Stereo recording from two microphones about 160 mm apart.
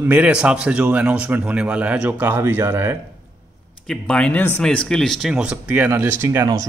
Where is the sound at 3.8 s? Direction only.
5° left (ahead or behind).